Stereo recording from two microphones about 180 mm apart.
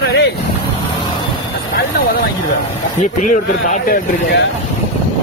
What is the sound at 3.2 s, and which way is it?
Speech, 45° left (ahead or behind).